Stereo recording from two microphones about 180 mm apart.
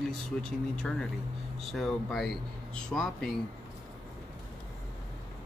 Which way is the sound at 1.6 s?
Centre (ahead or behind).